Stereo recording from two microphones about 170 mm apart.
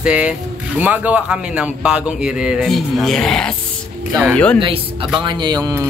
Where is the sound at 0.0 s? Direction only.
5° right (ahead or behind).